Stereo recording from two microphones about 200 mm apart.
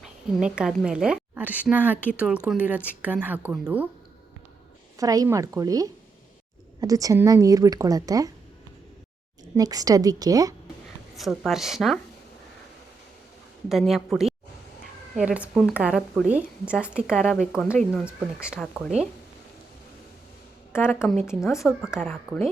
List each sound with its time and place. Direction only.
0.3 s a woman's voice: 5° right (ahead or behind)
4.9 s a woman's voice: 15° right (ahead or behind)
9.6 s a woman's voice: 20° right (ahead or behind)
11.2 s a woman's voice: centre (ahead or behind)
13.7 s a woman's voice: centre (ahead or behind)
20.7 s a woman's voice: 10° left (ahead or behind)